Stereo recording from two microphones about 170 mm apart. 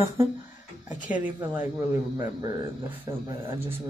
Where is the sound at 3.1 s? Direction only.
20° right (ahead or behind).